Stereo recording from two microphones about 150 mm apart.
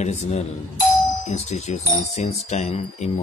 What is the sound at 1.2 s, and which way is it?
A man's voice, 45° left (ahead or behind).